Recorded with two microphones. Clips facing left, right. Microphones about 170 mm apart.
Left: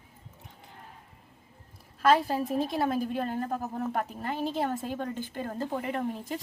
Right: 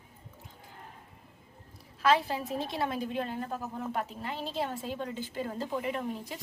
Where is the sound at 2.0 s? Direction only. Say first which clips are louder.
Left 3 dB; 45° left (ahead or behind).